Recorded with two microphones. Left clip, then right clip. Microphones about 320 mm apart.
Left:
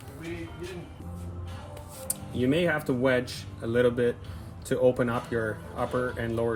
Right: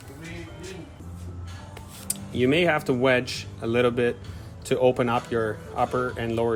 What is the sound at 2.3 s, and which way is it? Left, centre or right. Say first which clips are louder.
Speech: right 5 dB; centre.